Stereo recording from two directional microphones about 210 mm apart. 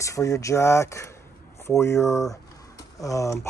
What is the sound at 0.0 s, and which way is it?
Speech, 15° left (ahead or behind).